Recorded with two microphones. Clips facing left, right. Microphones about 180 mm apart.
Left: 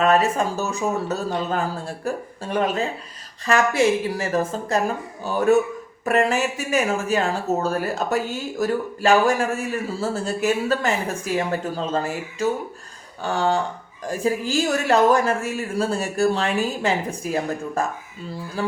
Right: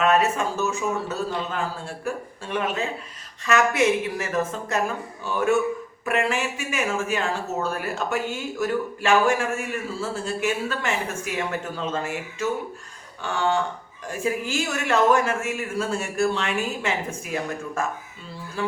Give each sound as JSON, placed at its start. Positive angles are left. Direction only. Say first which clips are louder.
{"t": 0.0, "sound": "speech", "louder": "left 2 dB", "side_deg": 35}